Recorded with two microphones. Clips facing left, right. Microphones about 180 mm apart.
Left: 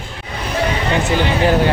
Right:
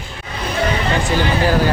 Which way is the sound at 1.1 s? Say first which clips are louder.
Left 2 dB; 20° left (ahead or behind).